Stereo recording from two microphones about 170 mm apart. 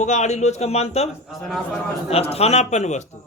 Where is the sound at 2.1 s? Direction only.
35° left (ahead or behind).